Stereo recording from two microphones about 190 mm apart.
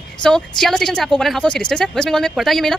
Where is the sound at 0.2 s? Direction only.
5° left (ahead or behind).